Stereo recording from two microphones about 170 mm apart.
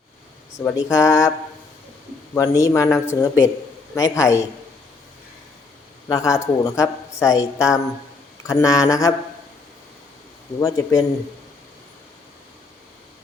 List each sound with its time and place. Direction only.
0.9 s a man's voice: 20° left (ahead or behind)
2.3 s a man's voice: 20° left (ahead or behind)
6.1 s a man's voice: 20° left (ahead or behind)
10.6 s a man's voice: 20° left (ahead or behind)